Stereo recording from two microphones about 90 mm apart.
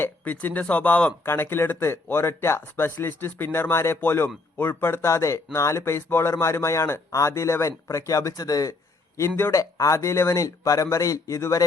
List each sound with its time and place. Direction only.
0.0 s speech: 20° left (ahead or behind)
1.2 s speech: 25° left (ahead or behind); by 8.7 s 40° left (ahead or behind)
9.1 s speech: 30° left (ahead or behind)